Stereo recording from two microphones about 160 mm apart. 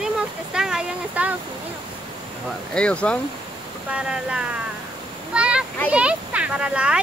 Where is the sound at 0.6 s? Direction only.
5° right (ahead or behind).